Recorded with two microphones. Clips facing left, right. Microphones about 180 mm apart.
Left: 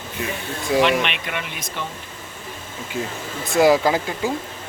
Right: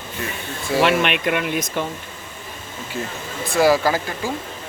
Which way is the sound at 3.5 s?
20° left (ahead or behind).